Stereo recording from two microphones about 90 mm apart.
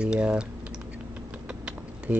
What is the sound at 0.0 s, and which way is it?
Speech, 10° right (ahead or behind).